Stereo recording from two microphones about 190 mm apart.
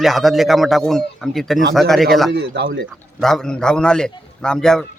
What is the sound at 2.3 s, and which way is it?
Speech, 60° right (ahead or behind).